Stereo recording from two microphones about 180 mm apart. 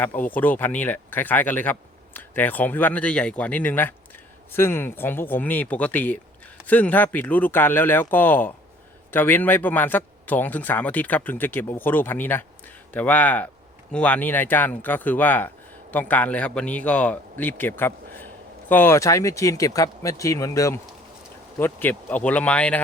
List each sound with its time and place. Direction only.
0.3 s speech: 10° left (ahead or behind)